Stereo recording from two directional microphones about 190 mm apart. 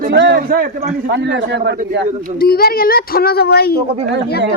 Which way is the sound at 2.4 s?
55° left (ahead or behind).